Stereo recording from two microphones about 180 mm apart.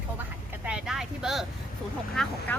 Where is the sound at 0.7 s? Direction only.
5° right (ahead or behind).